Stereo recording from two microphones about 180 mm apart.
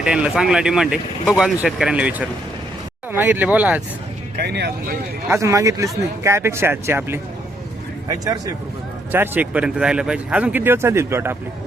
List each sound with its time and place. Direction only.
0.0 s speech: 5° right (ahead or behind)
4.4 s speech: 65° right (ahead or behind)
5.3 s a man's voice: 15° right (ahead or behind)